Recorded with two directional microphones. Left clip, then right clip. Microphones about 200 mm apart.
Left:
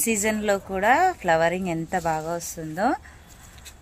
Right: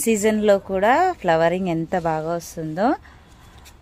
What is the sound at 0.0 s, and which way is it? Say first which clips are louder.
Speech: right 6 dB; 55° right (ahead or behind).